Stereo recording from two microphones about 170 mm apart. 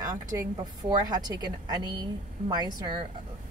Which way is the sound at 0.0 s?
20° right (ahead or behind).